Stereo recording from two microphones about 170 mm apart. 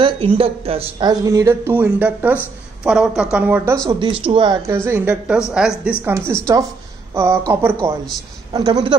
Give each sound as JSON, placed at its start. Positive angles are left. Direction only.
{"t": 0.4, "sound": "speech", "side_deg": -35}
{"t": 4.0, "sound": "speech", "side_deg": -30}
{"t": 4.6, "sound": "speech", "side_deg": -15}
{"t": 6.0, "sound": "speech", "side_deg": -15}